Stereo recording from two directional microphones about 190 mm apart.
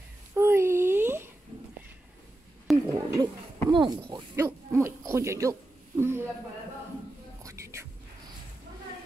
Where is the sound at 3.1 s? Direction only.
25° right (ahead or behind).